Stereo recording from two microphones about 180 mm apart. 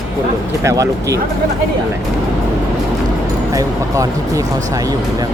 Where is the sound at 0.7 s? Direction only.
15° right (ahead or behind).